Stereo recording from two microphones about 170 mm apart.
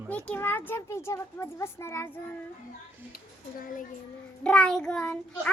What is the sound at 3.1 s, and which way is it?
Speech, 55° left (ahead or behind).